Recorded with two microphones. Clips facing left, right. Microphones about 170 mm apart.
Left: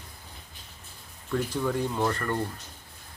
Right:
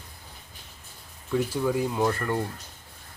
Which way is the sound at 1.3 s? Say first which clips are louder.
Right 3 dB; 10° right (ahead or behind).